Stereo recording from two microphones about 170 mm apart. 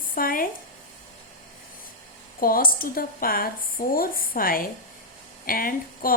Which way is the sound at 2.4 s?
60° left (ahead or behind).